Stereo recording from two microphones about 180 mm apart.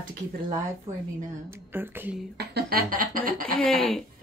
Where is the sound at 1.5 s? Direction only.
10° right (ahead or behind).